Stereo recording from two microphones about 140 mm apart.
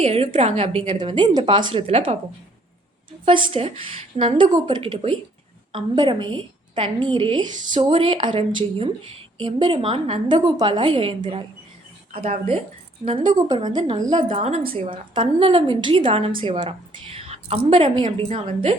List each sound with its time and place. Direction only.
0.0 s a woman's voice: 45° right (ahead or behind)